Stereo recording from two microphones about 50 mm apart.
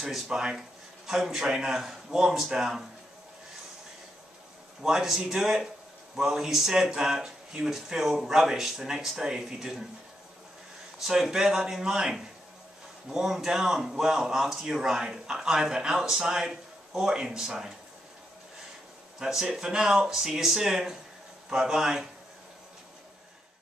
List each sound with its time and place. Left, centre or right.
0.3 s speech: centre
4.8 s speech: centre
11.0 s speech: centre
19.1 s speech: centre